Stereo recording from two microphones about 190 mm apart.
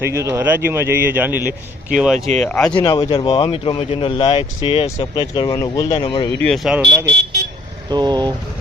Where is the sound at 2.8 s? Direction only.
20° left (ahead or behind).